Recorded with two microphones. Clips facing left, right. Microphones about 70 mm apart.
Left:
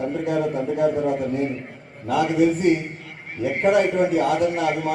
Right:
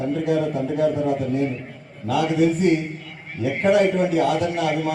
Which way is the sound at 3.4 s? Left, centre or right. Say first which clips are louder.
Right 1 dB; left.